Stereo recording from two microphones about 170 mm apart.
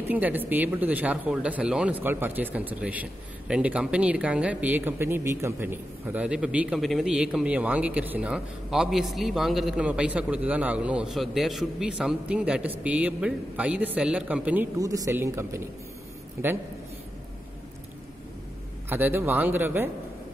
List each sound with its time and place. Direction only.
0.1 s speech: 10° right (ahead or behind)
14.8 s speech: 20° right (ahead or behind)
18.9 s speech: 10° right (ahead or behind)